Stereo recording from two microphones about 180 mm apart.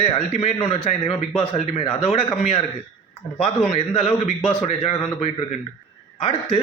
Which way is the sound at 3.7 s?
35° left (ahead or behind).